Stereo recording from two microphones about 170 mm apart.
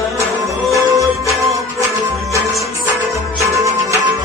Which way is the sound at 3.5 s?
20° right (ahead or behind).